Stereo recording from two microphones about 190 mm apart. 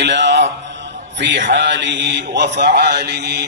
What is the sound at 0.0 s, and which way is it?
A man's voice, 65° right (ahead or behind).